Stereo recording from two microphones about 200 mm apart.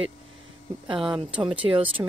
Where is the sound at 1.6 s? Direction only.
25° right (ahead or behind).